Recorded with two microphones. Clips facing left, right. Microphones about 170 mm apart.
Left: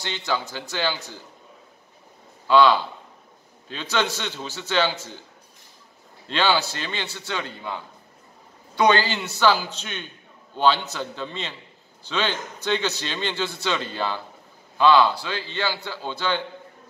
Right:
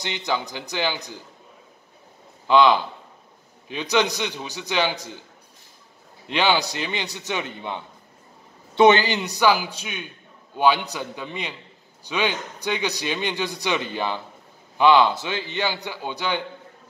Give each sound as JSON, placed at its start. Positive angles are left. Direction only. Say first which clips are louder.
{"t": 0.0, "sound": "a man's voice", "louder": "right 1 dB", "side_deg": -15}
{"t": 2.4, "sound": "a man's voice", "louder": "even", "side_deg": -20}
{"t": 6.2, "sound": "a man's voice", "louder": "right 1 dB", "side_deg": -15}